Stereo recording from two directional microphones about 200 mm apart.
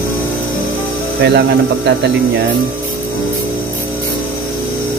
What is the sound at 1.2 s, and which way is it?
Speech, 60° right (ahead or behind).